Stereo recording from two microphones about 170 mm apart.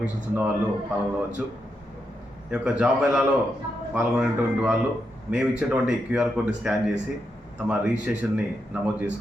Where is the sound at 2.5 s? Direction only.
5° right (ahead or behind).